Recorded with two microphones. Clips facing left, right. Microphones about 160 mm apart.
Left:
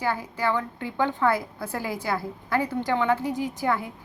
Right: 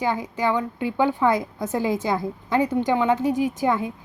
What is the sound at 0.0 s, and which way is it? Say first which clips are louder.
A woman's voice: right 3 dB; 15° right (ahead or behind).